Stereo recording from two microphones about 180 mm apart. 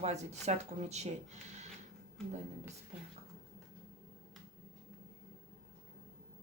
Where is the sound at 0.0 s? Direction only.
40° right (ahead or behind).